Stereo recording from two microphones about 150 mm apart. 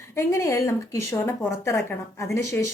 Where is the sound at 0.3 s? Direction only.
20° left (ahead or behind).